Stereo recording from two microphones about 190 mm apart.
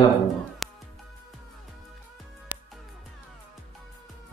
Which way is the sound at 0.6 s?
Centre (ahead or behind).